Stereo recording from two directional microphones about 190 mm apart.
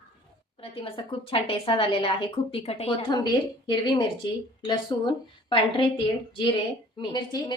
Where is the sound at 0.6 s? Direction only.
30° left (ahead or behind).